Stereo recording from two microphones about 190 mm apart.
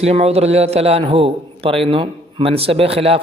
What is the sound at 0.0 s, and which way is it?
A man's voice, 35° right (ahead or behind).